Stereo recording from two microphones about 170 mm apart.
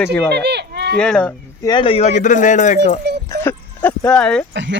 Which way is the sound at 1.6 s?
30° left (ahead or behind).